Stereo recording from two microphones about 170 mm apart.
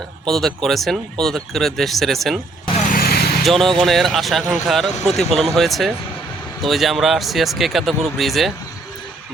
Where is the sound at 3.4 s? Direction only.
Centre (ahead or behind).